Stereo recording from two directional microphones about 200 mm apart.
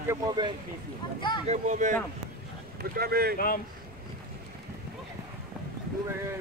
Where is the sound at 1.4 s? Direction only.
35° right (ahead or behind).